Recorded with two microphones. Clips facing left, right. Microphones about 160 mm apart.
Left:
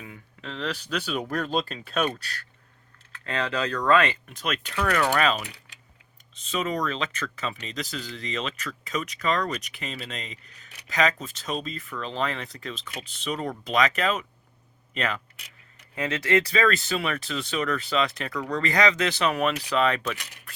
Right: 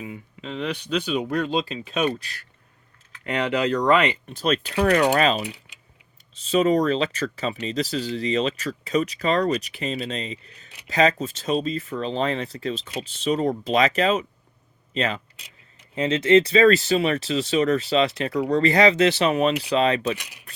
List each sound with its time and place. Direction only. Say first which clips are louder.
0.0 s speech: right 6 dB; 10° right (ahead or behind)
4.3 s speech: right 8 dB; 30° right (ahead or behind)
20.1 s speech: right 2 dB; 15° right (ahead or behind)